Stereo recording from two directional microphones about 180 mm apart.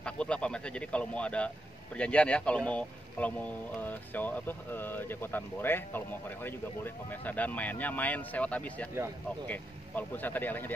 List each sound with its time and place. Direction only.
0.0 s speech: 5° left (ahead or behind)